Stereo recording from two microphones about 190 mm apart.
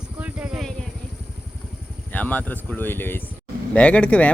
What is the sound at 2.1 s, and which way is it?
Speech, 10° left (ahead or behind).